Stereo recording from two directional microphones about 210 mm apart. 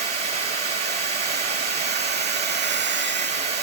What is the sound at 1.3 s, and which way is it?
Hair dryer, 50° right (ahead or behind).